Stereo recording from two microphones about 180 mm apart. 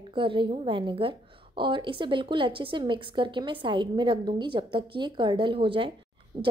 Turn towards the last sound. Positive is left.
turn(degrees=-25)  # may be behind; listen again after turning